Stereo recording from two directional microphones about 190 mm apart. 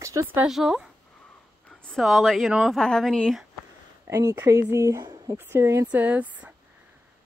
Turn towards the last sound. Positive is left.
turn(degrees=-10)  # may be behind; listen again after turning